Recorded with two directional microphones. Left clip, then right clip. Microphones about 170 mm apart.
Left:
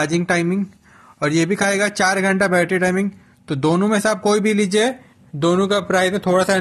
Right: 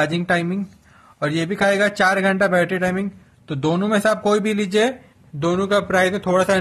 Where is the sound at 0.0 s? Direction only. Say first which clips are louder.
Left 1 dB; 15° left (ahead or behind).